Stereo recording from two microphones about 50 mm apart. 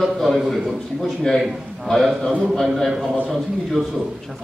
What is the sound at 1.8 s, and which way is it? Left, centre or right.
A man's voice, centre.